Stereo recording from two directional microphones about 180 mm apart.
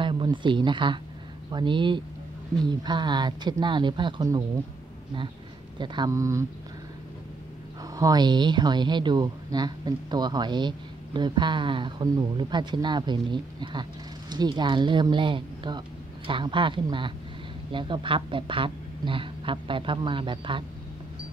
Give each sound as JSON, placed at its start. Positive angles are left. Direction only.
{"t": 0.0, "sound": "speech", "side_deg": -25}
{"t": 5.8, "sound": "a man's voice", "side_deg": -20}
{"t": 7.9, "sound": "speech", "side_deg": -20}